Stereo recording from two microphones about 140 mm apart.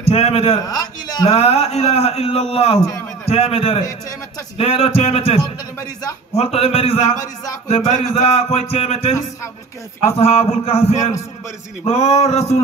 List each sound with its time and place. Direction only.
0.1 s a man's voice: 45° left (ahead or behind)
0.6 s a man's voice: 30° left (ahead or behind)
1.3 s a man's voice: 45° left (ahead or behind)